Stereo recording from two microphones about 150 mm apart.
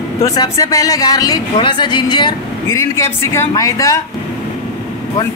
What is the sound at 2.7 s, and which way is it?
A man's voice, 20° left (ahead or behind).